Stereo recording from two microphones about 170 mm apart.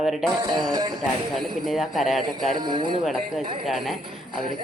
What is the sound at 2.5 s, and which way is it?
Speech, 25° right (ahead or behind).